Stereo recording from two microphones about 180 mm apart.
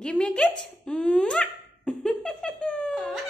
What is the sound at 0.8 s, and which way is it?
Dog, 5° left (ahead or behind).